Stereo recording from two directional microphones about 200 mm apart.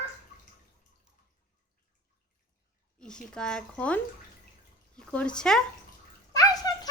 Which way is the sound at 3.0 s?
5° left (ahead or behind).